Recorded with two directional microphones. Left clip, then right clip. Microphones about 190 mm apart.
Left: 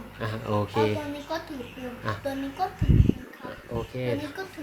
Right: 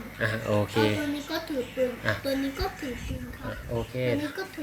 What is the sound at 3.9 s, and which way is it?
Speech, 20° left (ahead or behind).